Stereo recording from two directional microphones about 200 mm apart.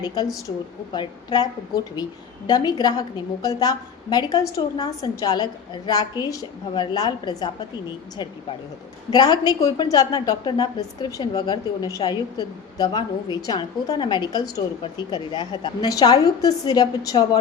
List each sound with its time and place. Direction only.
0.0 s a woman's voice: 20° left (ahead or behind)
2.5 s a woman's voice: 20° left (ahead or behind)
9.0 s a woman's voice: 20° left (ahead or behind)